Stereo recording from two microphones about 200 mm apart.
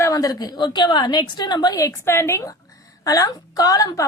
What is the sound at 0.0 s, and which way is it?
A woman's voice, 15° left (ahead or behind).